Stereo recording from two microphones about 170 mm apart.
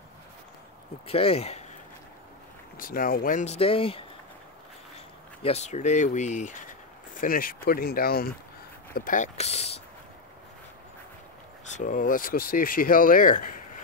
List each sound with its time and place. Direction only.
1.0 s speech: 35° left (ahead or behind)
2.8 s speech: 55° left (ahead or behind); by 4.0 s 30° left (ahead or behind)
5.4 s speech: 40° left (ahead or behind)
7.2 s speech: 55° left (ahead or behind); by 9.8 s 40° left (ahead or behind)
11.6 s speech: 45° left (ahead or behind)